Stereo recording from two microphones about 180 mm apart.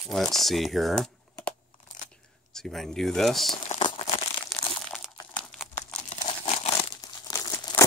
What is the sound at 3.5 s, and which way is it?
Crumpling, 30° left (ahead or behind).